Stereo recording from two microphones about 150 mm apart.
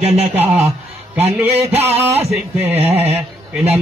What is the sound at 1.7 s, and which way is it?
Speech, 45° right (ahead or behind).